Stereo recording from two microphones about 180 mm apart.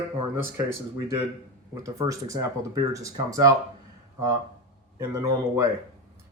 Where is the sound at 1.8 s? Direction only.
15° right (ahead or behind).